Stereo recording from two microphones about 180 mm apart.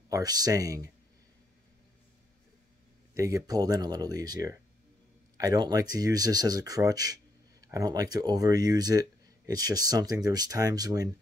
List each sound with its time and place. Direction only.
0.1 s speech: 20° right (ahead or behind)
3.2 s speech: 20° right (ahead or behind)